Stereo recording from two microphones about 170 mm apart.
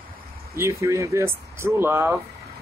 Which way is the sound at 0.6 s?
15° right (ahead or behind).